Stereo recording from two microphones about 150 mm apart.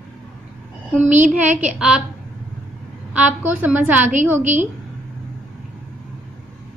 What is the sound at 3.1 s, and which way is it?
A woman's voice, 10° right (ahead or behind).